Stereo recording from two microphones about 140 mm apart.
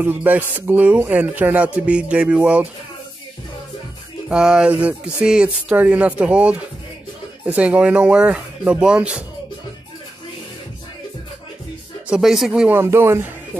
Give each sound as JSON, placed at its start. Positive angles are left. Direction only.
{"t": 0.0, "sound": "speech", "side_deg": -15}
{"t": 4.3, "sound": "speech", "side_deg": -5}
{"t": 12.1, "sound": "speech", "side_deg": -5}
{"t": 12.7, "sound": "speech", "side_deg": -15}